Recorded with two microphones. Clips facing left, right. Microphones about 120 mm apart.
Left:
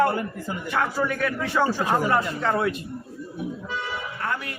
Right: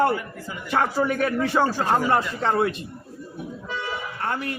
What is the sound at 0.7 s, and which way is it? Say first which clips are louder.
Speech: right 3 dB; 35° right (ahead or behind).